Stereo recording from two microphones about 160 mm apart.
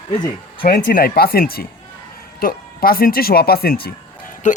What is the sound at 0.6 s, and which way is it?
Speech, 70° left (ahead or behind).